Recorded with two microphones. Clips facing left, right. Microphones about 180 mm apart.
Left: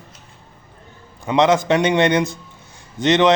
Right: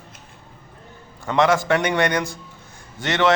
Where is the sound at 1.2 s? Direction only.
20° left (ahead or behind).